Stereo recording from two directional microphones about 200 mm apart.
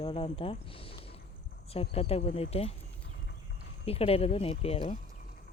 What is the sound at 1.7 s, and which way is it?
Speech, 30° left (ahead or behind).